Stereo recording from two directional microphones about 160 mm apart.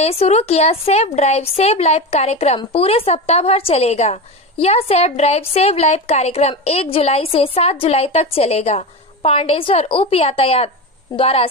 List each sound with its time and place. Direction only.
0.0 s a woman's voice: 40° left (ahead or behind)